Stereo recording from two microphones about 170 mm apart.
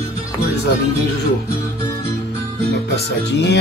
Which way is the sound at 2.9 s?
85° left.